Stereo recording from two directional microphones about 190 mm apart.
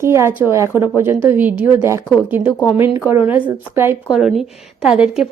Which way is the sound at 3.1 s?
35° left (ahead or behind).